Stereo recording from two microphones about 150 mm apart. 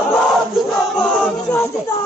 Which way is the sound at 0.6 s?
5° left (ahead or behind).